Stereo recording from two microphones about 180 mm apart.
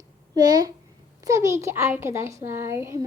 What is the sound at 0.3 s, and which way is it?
A child's voice, 20° right (ahead or behind).